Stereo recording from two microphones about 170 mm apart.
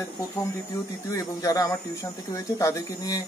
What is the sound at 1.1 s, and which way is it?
Speech, 20° left (ahead or behind).